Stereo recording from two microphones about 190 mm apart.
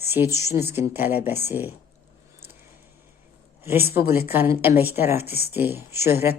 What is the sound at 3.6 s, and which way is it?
Speech, 10° right (ahead or behind).